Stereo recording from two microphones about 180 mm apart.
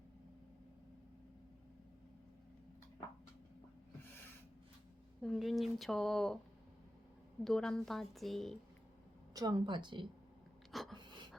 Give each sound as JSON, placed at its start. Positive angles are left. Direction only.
{"t": 5.2, "sound": "a woman's voice", "side_deg": 0}
{"t": 7.4, "sound": "a woman's voice", "side_deg": 5}
{"t": 9.3, "sound": "speech", "side_deg": -20}
{"t": 10.7, "sound": "a sound", "side_deg": 0}